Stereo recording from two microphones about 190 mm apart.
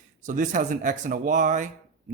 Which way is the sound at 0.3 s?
40° right (ahead or behind).